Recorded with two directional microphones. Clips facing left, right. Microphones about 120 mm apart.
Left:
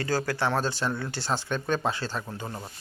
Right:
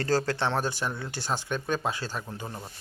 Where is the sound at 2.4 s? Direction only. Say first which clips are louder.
Left 2 dB; 15° left (ahead or behind).